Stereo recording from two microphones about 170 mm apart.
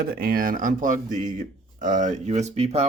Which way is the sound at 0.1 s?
60° right (ahead or behind).